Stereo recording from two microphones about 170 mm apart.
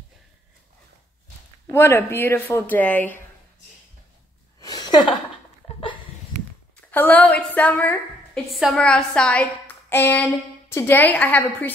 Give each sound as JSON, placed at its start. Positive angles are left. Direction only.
{"t": 1.7, "sound": "a woman's voice", "side_deg": 15}
{"t": 4.6, "sound": "a sound", "side_deg": 25}
{"t": 6.9, "sound": "a woman's voice", "side_deg": 10}